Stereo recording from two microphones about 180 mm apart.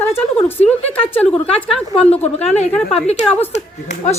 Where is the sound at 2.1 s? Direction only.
35° left (ahead or behind).